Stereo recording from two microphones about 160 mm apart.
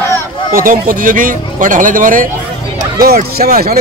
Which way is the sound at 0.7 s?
60° right (ahead or behind).